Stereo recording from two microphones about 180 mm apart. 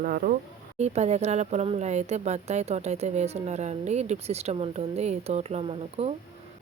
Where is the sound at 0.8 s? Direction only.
35° right (ahead or behind).